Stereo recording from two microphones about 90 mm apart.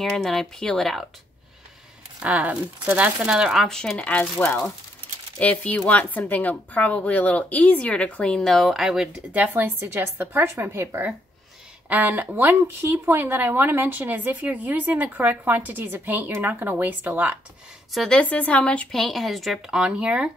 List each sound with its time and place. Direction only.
0.0 s speech: 5° left (ahead or behind)
2.1 s speech: 15° right (ahead or behind)
3.6 s a woman's voice: 5° left (ahead or behind); by 11.0 s 30° right (ahead or behind)
11.9 s speech: 20° right (ahead or behind)
17.9 s speech: 5° left (ahead or behind); by 20.2 s 10° right (ahead or behind)